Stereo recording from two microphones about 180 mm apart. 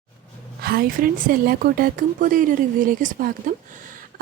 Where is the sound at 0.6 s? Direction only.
55° right (ahead or behind).